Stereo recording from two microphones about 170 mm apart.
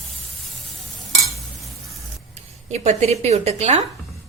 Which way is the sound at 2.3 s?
40° right (ahead or behind).